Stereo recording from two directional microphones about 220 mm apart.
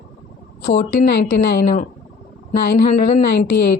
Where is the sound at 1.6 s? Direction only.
35° left (ahead or behind).